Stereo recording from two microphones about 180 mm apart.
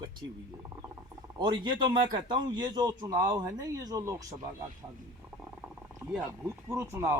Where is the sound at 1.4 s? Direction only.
25° right (ahead or behind).